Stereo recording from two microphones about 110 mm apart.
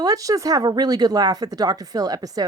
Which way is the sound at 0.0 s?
30° right (ahead or behind).